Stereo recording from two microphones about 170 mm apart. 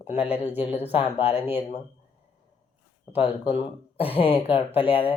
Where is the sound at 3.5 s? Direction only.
35° left (ahead or behind).